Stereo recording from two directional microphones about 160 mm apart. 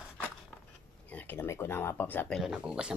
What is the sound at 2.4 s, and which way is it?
Speech, 5° right (ahead or behind).